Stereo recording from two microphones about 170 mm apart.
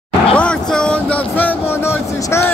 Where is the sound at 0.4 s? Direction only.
5° left (ahead or behind).